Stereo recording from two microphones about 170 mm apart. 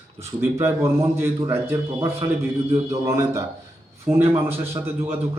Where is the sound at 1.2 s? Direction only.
15° right (ahead or behind).